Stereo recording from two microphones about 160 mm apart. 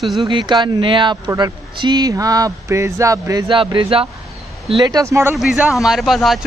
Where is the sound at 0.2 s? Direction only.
30° right (ahead or behind).